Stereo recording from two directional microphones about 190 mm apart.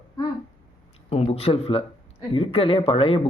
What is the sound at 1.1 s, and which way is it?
Speech, 30° left (ahead or behind).